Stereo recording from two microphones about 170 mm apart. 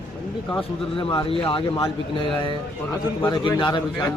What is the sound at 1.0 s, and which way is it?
Speech, 30° left (ahead or behind).